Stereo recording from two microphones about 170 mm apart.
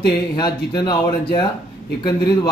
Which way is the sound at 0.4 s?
25° left (ahead or behind).